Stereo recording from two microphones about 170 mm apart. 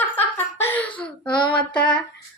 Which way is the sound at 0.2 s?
10° left (ahead or behind).